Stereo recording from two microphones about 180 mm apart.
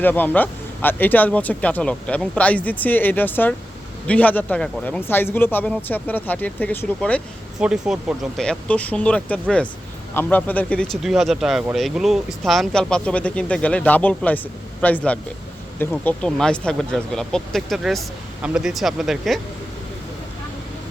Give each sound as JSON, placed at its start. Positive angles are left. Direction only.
{"t": 0.0, "sound": "speech", "side_deg": 10}
{"t": 7.6, "sound": "speech", "side_deg": -5}